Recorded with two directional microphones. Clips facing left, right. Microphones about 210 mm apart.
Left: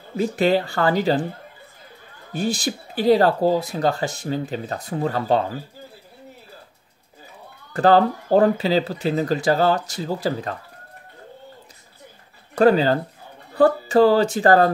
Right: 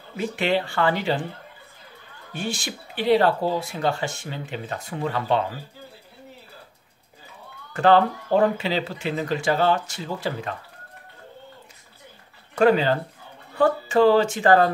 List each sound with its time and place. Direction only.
0.2 s speech: 40° left (ahead or behind)
2.3 s speech: 35° left (ahead or behind)
7.7 s speech: 35° left (ahead or behind)
12.5 s speech: 40° left (ahead or behind)